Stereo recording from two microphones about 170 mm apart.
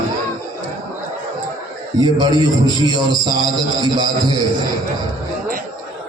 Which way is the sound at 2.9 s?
25° right (ahead or behind).